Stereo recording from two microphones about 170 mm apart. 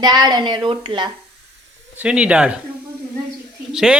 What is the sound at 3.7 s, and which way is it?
Speech, 5° right (ahead or behind).